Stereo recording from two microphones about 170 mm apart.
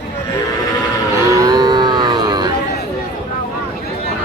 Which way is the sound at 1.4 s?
25° right (ahead or behind).